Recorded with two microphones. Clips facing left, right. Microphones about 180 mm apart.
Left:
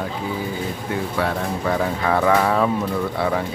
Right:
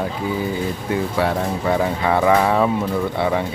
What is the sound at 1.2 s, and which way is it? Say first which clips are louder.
Speech: right 1 dB; 5° right (ahead or behind).